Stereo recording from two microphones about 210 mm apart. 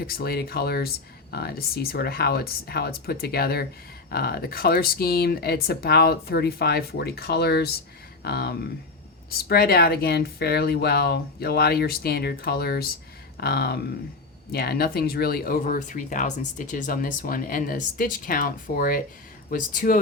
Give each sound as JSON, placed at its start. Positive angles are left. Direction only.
{"t": 0.0, "sound": "speech", "side_deg": 45}